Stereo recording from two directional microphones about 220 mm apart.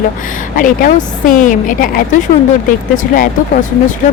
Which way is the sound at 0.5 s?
40° left (ahead or behind).